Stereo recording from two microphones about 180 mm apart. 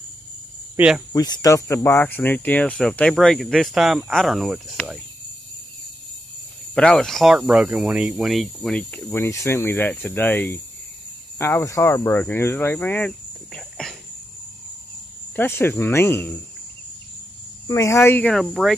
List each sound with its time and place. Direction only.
0.7 s speech: 5° right (ahead or behind)
1.1 s speech: 20° left (ahead or behind); by 4.6 s centre (ahead or behind)
6.7 s speech: 5° left (ahead or behind)
15.3 s speech: 15° left (ahead or behind)
17.6 s speech: 15° left (ahead or behind); by 18.8 s centre (ahead or behind)